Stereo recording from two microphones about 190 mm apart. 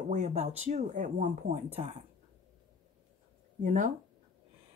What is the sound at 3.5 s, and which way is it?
Speech, 45° right (ahead or behind).